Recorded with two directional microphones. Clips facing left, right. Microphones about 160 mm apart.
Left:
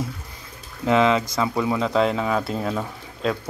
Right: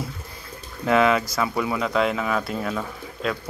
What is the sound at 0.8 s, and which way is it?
Speech, 20° left (ahead or behind).